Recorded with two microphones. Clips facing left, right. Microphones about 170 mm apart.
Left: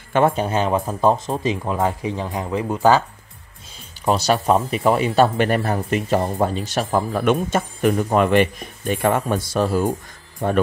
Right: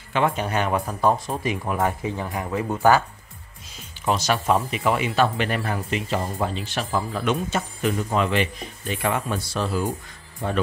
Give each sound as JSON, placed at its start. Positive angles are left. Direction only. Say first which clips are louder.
{"t": 0.1, "sound": "speech", "louder": "left 5 dB", "side_deg": 45}
{"t": 0.5, "sound": "speech", "louder": "left 4 dB", "side_deg": 25}
{"t": 4.0, "sound": "speech", "louder": "left 4 dB", "side_deg": 35}